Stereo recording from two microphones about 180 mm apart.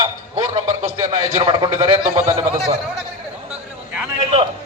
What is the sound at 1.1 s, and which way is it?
Speech, 30° right (ahead or behind).